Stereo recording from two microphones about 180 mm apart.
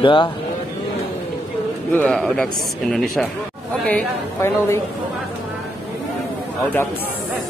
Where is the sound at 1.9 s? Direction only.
5° left (ahead or behind).